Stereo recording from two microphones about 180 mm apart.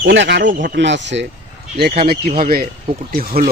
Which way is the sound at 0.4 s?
55° right (ahead or behind).